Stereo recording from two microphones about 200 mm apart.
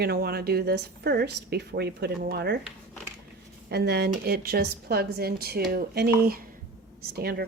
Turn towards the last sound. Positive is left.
turn(degrees=-50)  # may be behind; listen again after turning